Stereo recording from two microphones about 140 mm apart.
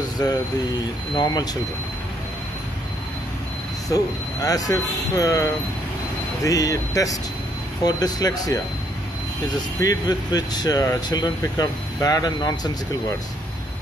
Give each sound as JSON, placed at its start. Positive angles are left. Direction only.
{"t": 0.2, "sound": "speech", "side_deg": 30}
{"t": 3.9, "sound": "speech", "side_deg": 25}
{"t": 9.8, "sound": "speech", "side_deg": 25}